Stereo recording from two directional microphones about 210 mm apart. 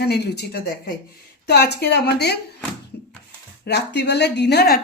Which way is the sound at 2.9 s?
50° left (ahead or behind).